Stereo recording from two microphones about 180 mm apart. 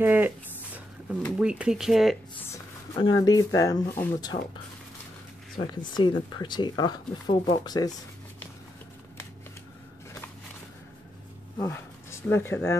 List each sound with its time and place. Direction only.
0.0 s speech: 10° right (ahead or behind)
1.4 s speech: 5° right (ahead or behind)
3.0 s speech: 25° left (ahead or behind)
5.8 s speech: 25° left (ahead or behind)
11.5 s speech: 15° left (ahead or behind)